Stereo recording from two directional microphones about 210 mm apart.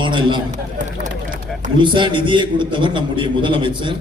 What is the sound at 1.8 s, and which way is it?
A man's voice, 20° right (ahead or behind).